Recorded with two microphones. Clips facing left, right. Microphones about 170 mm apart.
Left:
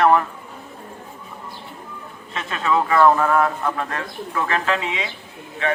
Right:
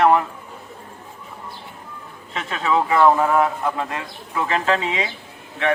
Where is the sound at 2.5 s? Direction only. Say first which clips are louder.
Even; 15° right (ahead or behind).